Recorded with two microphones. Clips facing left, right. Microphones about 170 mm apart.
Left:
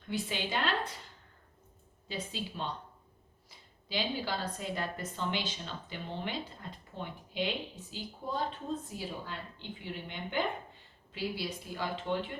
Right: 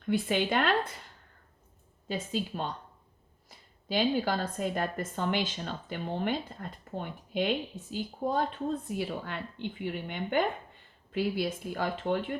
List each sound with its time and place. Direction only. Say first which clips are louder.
0.1 s a woman's voice: right 7 dB; 55° right (ahead or behind)
2.0 s a woman's voice: right 6 dB; 50° right (ahead or behind)
8.9 s a woman's voice: right 6 dB; 65° right (ahead or behind)